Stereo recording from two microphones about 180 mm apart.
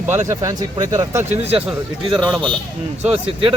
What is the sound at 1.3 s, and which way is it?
Speech, 35° right (ahead or behind).